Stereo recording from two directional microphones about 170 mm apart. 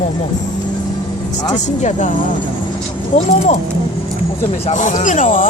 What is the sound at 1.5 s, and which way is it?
Speech, 45° left (ahead or behind).